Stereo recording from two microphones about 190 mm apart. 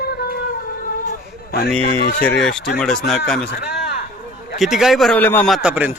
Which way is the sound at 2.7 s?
5° left (ahead or behind).